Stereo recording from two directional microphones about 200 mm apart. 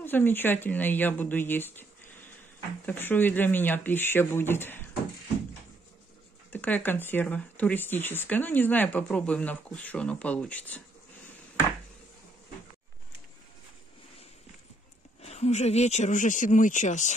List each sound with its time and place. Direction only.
0.0 s speech: 10° left (ahead or behind)
6.5 s speech: 10° left (ahead or behind)
15.2 s speech: 35° left (ahead or behind)